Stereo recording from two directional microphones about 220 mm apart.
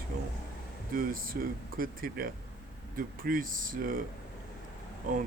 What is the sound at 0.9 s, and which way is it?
Speech, 40° right (ahead or behind).